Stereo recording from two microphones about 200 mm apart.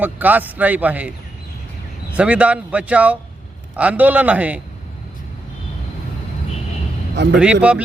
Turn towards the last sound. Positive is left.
turn(degrees=-5)  # may be behind; listen again after turning